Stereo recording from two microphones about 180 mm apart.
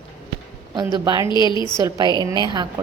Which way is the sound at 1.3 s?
25° left (ahead or behind).